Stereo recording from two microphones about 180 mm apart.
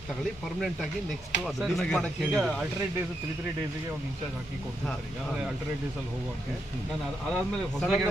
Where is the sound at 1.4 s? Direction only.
Centre (ahead or behind).